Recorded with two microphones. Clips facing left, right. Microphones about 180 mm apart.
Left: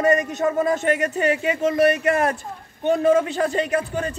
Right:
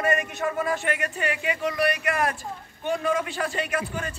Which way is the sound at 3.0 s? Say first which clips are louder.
Left 9 dB; 40° left (ahead or behind).